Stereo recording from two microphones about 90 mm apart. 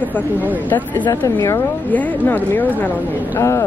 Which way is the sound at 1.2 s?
40° left (ahead or behind).